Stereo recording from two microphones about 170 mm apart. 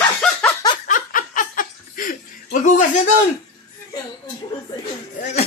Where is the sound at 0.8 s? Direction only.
50° left (ahead or behind).